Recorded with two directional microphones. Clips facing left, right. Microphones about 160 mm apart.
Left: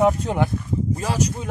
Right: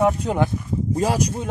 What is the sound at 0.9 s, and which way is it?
Speech, 35° right (ahead or behind).